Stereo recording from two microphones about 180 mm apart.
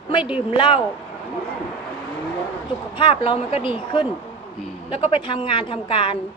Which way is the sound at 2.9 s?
30° left (ahead or behind).